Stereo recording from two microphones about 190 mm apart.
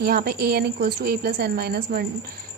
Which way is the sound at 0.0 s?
55° right (ahead or behind).